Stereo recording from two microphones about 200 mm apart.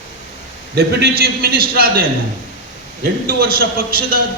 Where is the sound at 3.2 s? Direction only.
50° right (ahead or behind).